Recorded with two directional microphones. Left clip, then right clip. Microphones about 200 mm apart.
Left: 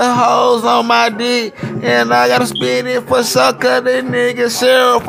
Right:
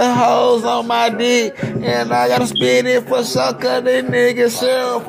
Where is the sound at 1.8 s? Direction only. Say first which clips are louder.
Left 5 dB; 25° left (ahead or behind).